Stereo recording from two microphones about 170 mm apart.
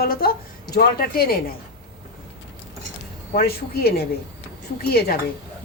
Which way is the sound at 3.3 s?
65° left (ahead or behind).